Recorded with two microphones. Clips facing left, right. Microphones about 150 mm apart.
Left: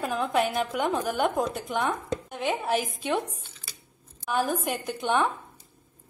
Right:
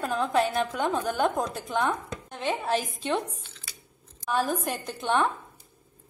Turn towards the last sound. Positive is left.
turn(degrees=5)  # may be behind; listen again after turning